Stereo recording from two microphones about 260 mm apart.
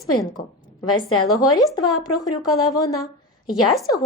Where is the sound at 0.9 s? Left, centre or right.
Left.